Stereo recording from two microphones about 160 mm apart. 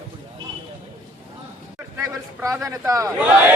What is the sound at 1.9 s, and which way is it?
A man's voice, 15° right (ahead or behind).